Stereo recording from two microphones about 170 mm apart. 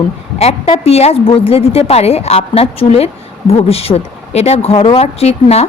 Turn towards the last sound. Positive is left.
turn(degrees=35)  # may be behind; listen again after turning